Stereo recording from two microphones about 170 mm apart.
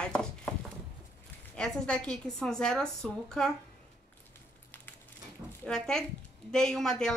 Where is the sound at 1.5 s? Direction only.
5° left (ahead or behind).